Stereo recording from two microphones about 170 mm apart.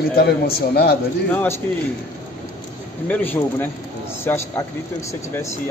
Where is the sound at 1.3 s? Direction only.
10° left (ahead or behind).